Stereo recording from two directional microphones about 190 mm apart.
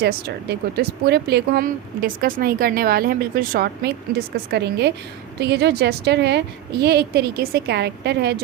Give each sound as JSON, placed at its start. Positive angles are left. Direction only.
{"t": 0.0, "sound": "speech", "side_deg": -55}
{"t": 4.5, "sound": "a woman's voice", "side_deg": -65}